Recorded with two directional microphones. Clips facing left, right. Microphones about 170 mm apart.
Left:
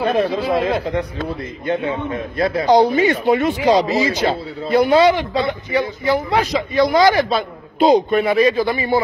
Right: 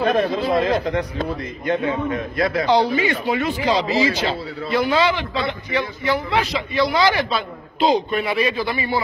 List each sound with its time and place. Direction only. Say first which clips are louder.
0.0 s speech: left 1 dB; 30° left (ahead or behind)
0.4 s speech: left 1 dB; 10° left (ahead or behind)
1.7 s a man's voice: even; 30° left (ahead or behind)
2.6 s a man's voice: left 6 dB; 45° left (ahead or behind)